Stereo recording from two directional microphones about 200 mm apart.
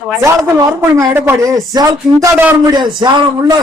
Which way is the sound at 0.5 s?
15° right (ahead or behind).